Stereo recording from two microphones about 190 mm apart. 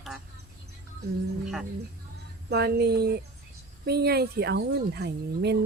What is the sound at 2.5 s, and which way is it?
A woman's voice, 60° right (ahead or behind).